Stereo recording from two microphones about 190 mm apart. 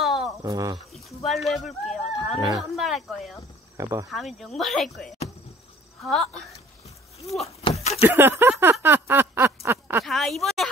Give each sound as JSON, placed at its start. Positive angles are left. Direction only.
{"t": 0.0, "sound": "cricket", "side_deg": 0}
{"t": 0.4, "sound": "speech", "side_deg": -20}
{"t": 0.7, "sound": "speech", "side_deg": 0}
{"t": 3.7, "sound": "a sound", "side_deg": -15}
{"t": 4.1, "sound": "speech", "side_deg": 0}
{"t": 7.2, "sound": "speech", "side_deg": 35}
{"t": 8.0, "sound": "a sound", "side_deg": -10}
{"t": 10.0, "sound": "speech", "side_deg": 0}